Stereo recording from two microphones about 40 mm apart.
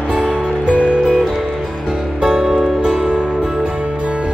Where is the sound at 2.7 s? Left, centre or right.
Right.